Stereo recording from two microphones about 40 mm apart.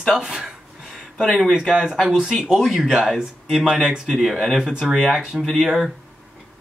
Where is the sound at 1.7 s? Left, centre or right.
Centre.